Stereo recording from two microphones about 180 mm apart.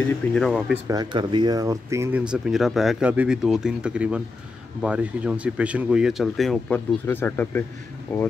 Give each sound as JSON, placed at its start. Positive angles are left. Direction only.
{"t": 0.3, "sound": "speech", "side_deg": 0}
{"t": 0.8, "sound": "speech", "side_deg": -25}
{"t": 7.1, "sound": "speech", "side_deg": 10}